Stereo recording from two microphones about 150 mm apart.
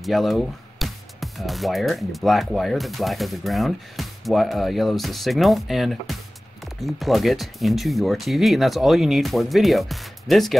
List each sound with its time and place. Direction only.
0.0 s speech: centre (ahead or behind)